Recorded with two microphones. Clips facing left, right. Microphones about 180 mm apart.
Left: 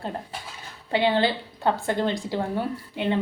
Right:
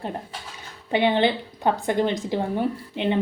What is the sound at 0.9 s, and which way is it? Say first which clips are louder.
A woman's voice: right 2 dB; 20° right (ahead or behind).